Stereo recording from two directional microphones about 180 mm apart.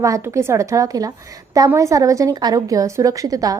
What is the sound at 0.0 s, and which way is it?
A woman's voice, 15° right (ahead or behind).